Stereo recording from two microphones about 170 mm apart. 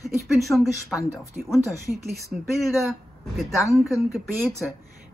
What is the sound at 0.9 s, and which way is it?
Speech, 20° left (ahead or behind).